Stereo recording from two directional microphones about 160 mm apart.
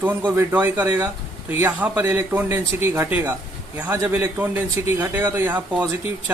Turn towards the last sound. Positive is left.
turn(degrees=-10)  # may be behind; listen again after turning